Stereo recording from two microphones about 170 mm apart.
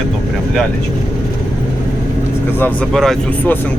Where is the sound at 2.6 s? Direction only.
Centre (ahead or behind).